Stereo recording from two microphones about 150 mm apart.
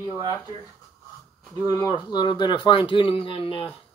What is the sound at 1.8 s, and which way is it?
Speech, 30° left (ahead or behind).